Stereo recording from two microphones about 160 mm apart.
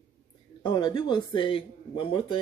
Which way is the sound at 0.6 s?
25° left (ahead or behind).